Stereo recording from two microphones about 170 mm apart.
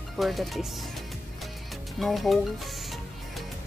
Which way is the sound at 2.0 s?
Centre (ahead or behind).